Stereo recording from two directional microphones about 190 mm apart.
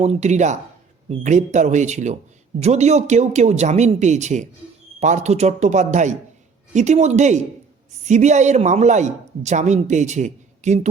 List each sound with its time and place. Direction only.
0.0 s a man's voice: 35° right (ahead or behind)